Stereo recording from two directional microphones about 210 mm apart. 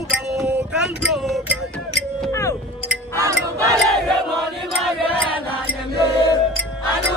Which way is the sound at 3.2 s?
15° right (ahead or behind).